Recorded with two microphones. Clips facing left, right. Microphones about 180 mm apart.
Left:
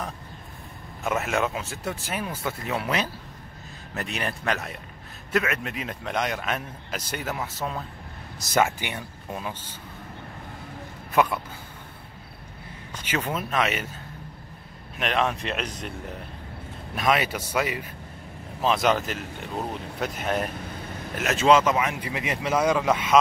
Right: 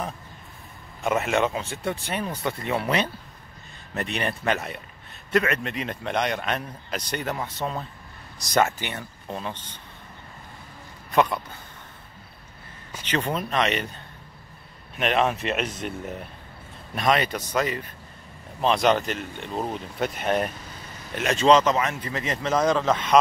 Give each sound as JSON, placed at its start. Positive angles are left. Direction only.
{"t": 1.0, "sound": "speech", "side_deg": 0}
{"t": 11.1, "sound": "speech", "side_deg": 5}
{"t": 13.0, "sound": "speech", "side_deg": 5}
{"t": 15.0, "sound": "speech", "side_deg": 0}
{"t": 20.6, "sound": "hiccup", "side_deg": 60}
{"t": 21.1, "sound": "speech", "side_deg": 5}